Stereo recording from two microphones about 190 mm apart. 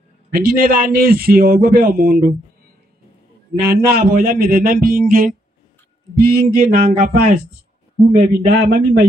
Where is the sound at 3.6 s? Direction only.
55° right (ahead or behind).